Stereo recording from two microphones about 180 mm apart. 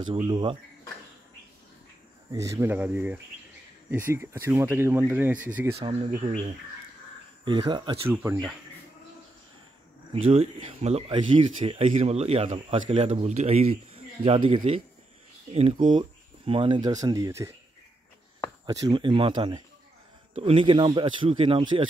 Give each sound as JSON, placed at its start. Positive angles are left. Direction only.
{"t": 0.2, "sound": "speech", "side_deg": -25}
{"t": 2.3, "sound": "speech", "side_deg": -15}
{"t": 7.4, "sound": "speech", "side_deg": -30}
{"t": 8.1, "sound": "speech", "side_deg": -10}
{"t": 10.2, "sound": "speech", "side_deg": -35}
{"t": 18.7, "sound": "speech", "side_deg": -20}